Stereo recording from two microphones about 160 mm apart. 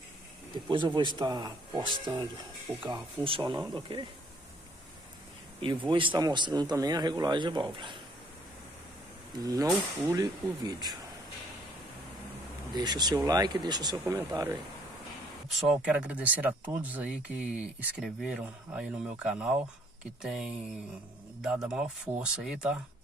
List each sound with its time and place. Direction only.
0.7 s speech: 30° right (ahead or behind)
5.6 s speech: 30° right (ahead or behind)
9.4 s speech: 20° right (ahead or behind)
12.7 s speech: 25° right (ahead or behind)
15.5 s speech: 5° right (ahead or behind)